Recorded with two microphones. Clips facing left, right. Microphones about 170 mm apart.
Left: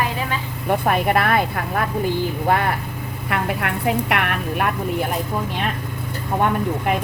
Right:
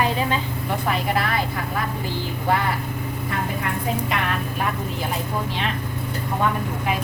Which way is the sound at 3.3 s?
70° left (ahead or behind).